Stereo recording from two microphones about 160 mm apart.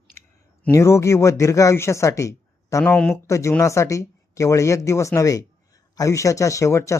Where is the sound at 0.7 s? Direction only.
20° left (ahead or behind).